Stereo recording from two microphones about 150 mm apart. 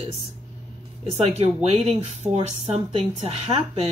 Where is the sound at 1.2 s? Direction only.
45° right (ahead or behind).